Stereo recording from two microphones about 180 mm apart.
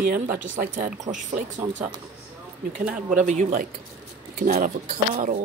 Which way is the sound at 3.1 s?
45° right (ahead or behind).